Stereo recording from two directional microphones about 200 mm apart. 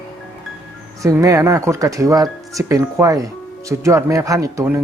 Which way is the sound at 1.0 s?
15° right (ahead or behind).